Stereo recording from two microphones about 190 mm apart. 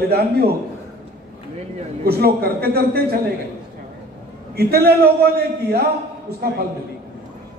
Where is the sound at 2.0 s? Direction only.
55° right (ahead or behind).